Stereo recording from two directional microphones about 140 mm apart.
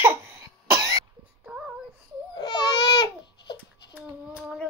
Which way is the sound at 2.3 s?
30° left (ahead or behind).